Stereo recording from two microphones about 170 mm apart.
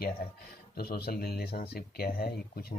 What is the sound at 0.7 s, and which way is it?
Speech, 65° left (ahead or behind).